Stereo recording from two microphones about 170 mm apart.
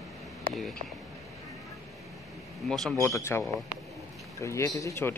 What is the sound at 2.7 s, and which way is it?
Speech, 5° left (ahead or behind).